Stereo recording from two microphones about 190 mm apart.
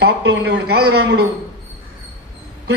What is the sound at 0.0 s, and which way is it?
A man's voice, 55° right (ahead or behind).